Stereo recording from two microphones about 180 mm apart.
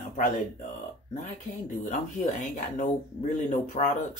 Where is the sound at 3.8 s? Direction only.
45° left (ahead or behind).